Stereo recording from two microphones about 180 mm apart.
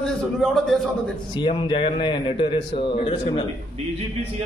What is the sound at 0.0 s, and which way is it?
A man's voice, 5° left (ahead or behind).